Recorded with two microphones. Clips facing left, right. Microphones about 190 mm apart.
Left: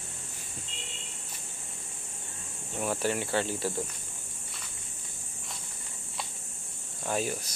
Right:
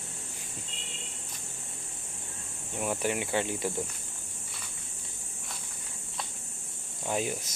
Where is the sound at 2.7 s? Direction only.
15° right (ahead or behind).